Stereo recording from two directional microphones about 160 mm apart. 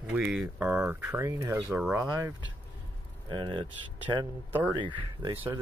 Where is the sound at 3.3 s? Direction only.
30° right (ahead or behind).